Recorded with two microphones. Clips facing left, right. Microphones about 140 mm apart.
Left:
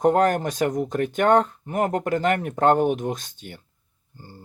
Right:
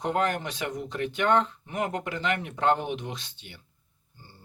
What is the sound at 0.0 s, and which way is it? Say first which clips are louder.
Speech: left 8 dB; 45° left (ahead or behind).